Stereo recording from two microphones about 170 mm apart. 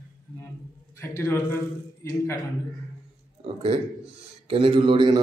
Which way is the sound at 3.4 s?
35° right (ahead or behind).